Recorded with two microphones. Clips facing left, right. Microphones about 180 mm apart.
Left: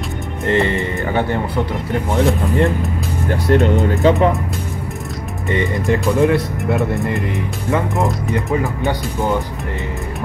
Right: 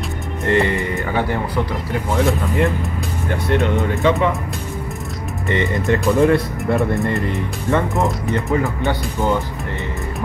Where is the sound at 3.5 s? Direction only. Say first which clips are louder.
Left 4 dB; 45° left (ahead or behind).